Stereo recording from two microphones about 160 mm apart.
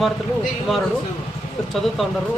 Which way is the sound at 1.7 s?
Centre (ahead or behind).